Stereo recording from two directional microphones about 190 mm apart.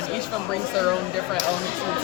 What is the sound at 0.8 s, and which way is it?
Speech, centre (ahead or behind).